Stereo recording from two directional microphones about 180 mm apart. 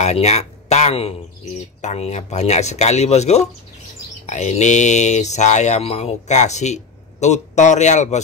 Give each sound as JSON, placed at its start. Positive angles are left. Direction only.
{"t": 0.0, "sound": "speech", "side_deg": 40}